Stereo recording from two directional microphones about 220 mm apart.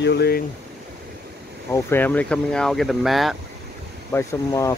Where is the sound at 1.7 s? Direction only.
10° left (ahead or behind).